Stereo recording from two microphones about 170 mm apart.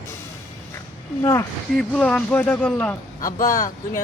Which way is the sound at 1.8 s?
5° left (ahead or behind).